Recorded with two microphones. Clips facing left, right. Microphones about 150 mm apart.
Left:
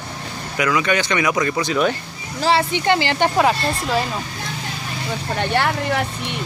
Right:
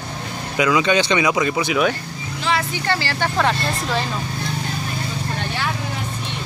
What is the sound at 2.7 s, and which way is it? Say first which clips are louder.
Speech: left 5 dB; 20° left (ahead or behind).